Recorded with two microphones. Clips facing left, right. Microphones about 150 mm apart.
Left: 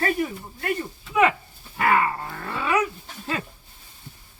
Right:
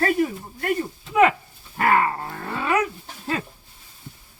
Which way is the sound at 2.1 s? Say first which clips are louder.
Right 2 dB; 25° right (ahead or behind).